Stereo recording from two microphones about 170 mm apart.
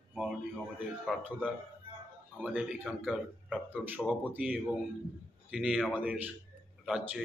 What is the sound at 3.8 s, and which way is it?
A man's voice, 10° right (ahead or behind).